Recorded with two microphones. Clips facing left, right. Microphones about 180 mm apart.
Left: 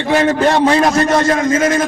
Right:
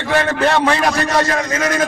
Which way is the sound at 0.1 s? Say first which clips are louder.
Left 4 dB; 15° left (ahead or behind).